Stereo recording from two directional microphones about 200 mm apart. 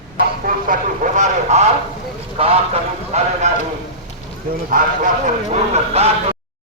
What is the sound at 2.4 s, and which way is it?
Speech, 30° right (ahead or behind).